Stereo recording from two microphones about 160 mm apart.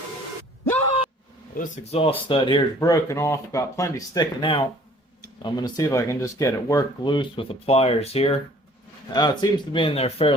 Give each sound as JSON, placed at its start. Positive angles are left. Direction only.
{"t": 1.5, "sound": "speech", "side_deg": 55}
{"t": 9.1, "sound": "speech", "side_deg": 25}